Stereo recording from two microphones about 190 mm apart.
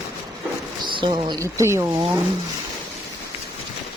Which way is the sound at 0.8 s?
25° right (ahead or behind).